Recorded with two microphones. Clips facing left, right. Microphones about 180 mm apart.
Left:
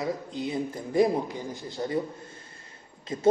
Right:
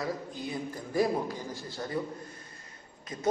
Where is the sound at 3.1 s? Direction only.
30° left (ahead or behind).